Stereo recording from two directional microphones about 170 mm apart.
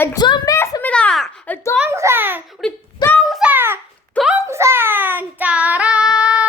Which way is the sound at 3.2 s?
5° right (ahead or behind).